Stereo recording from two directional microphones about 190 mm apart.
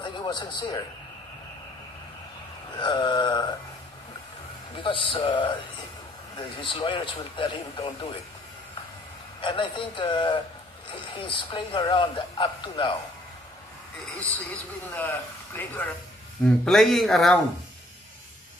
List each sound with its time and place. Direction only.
0.0 s a man's voice: 25° left (ahead or behind)
2.8 s speech: 25° left (ahead or behind)
4.8 s speech: 25° left (ahead or behind)
9.4 s speech: 25° left (ahead or behind)
14.9 s speech: 10° left (ahead or behind)